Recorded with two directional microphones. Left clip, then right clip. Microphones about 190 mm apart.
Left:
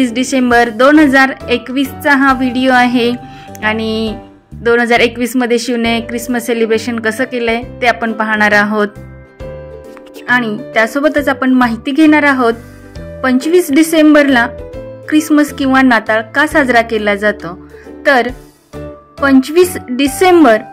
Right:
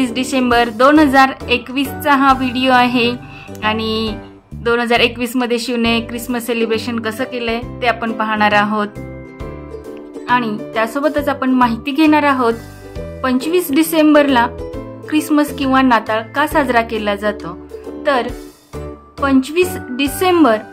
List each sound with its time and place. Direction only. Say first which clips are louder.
0.0 s a woman's voice: left 4 dB; 15° left (ahead or behind)
10.2 s a woman's voice: left 3 dB; 20° left (ahead or behind)